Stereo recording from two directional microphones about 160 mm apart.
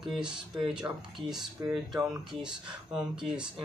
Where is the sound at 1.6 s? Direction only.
15° right (ahead or behind).